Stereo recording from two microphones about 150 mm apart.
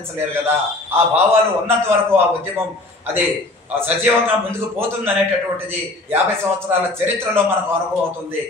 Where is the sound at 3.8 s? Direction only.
15° right (ahead or behind).